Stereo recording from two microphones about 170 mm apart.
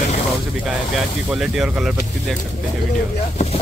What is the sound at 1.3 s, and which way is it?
Speech, 5° right (ahead or behind).